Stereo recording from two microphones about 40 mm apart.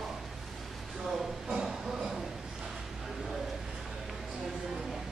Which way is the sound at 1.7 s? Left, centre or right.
Centre.